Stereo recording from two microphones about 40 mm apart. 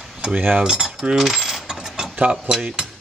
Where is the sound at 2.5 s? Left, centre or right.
Centre.